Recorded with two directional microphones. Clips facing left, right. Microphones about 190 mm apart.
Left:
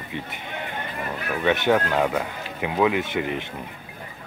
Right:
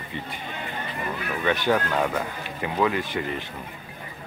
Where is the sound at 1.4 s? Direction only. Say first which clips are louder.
Left 3 dB; 20° left (ahead or behind).